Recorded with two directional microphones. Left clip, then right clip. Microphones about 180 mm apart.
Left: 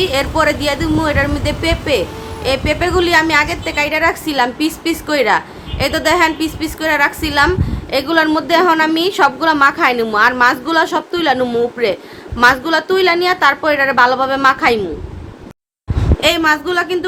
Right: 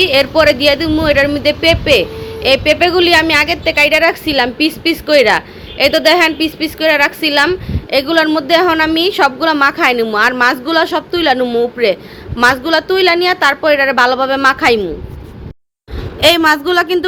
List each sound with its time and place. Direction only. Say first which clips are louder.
0.0 s a woman's voice: right 5 dB; 15° right (ahead or behind)
16.2 s speech: right 4 dB; 50° right (ahead or behind)